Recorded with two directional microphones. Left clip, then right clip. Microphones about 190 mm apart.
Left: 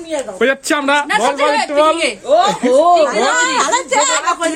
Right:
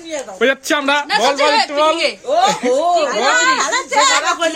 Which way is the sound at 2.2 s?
15° right (ahead or behind).